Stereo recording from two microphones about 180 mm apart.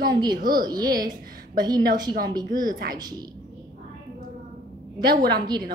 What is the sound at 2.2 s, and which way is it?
Speech, 20° right (ahead or behind).